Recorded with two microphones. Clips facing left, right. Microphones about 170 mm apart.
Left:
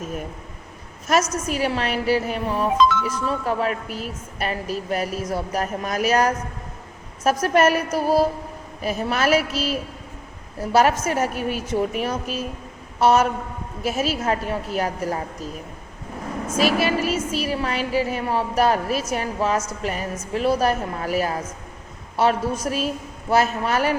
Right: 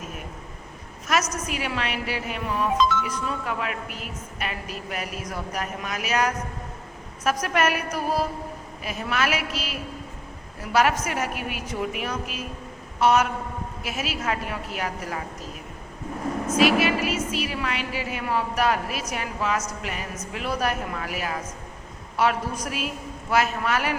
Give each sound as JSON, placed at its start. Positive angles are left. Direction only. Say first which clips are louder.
{"t": 1.5, "sound": "speech", "louder": "left 6 dB", "side_deg": 35}
{"t": 7.4, "sound": "speech", "louder": "left 9 dB", "side_deg": 30}
{"t": 10.6, "sound": "speech", "louder": "left 4 dB", "side_deg": 30}
{"t": 16.6, "sound": "a woman's voice", "louder": "left 3 dB", "side_deg": 35}